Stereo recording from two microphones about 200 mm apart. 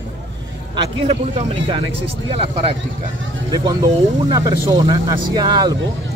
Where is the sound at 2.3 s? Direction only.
30° right (ahead or behind).